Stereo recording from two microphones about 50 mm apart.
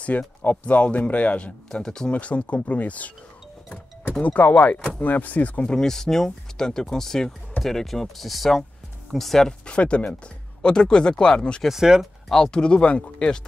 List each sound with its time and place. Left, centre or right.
0.4 s a man's voice: left
1.7 s speech: centre
2.1 s a man's voice: left
4.2 s speech: left
5.7 s speech: centre
12.0 s speech: centre
12.4 s a man's voice: centre